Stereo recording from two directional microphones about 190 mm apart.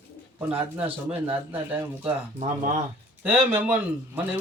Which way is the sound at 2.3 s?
45° right (ahead or behind).